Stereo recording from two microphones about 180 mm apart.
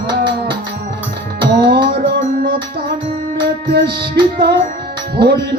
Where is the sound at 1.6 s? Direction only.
65° right (ahead or behind).